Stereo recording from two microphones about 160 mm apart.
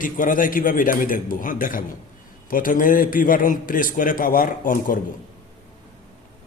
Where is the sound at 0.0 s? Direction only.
55° left (ahead or behind).